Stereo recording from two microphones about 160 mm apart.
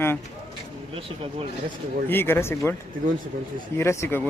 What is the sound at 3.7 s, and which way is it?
Speech, 15° left (ahead or behind).